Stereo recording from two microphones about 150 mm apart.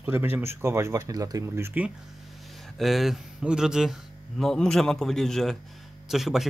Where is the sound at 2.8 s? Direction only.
Centre (ahead or behind).